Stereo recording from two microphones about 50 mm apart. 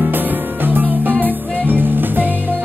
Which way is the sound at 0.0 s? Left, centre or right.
Right.